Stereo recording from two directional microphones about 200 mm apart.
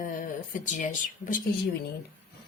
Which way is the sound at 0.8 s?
40° left (ahead or behind).